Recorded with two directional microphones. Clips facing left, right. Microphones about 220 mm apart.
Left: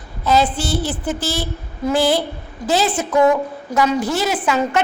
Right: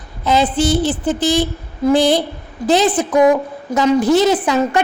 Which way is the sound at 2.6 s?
20° right (ahead or behind).